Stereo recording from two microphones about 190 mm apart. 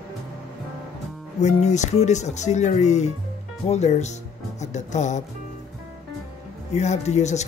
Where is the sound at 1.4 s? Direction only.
40° left (ahead or behind).